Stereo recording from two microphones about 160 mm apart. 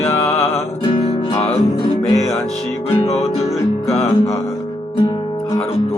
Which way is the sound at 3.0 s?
40° left (ahead or behind).